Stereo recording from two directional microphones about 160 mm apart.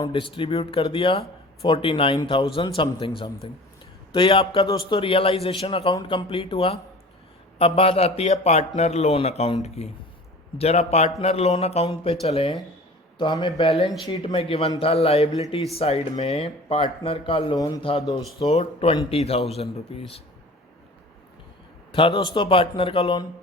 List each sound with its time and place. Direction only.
0.0 s a man's voice: 30° left (ahead or behind)
18.3 s a man's voice: 35° left (ahead or behind)
21.9 s a man's voice: 30° left (ahead or behind)